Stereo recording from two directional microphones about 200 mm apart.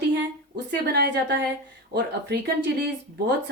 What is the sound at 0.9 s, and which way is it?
Speech, 55° right (ahead or behind).